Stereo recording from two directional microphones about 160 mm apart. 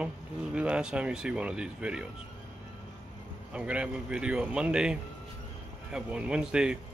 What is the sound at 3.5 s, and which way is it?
A man's voice, 5° right (ahead or behind).